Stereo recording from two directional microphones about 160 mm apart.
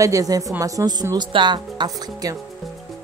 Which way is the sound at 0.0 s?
20° right (ahead or behind).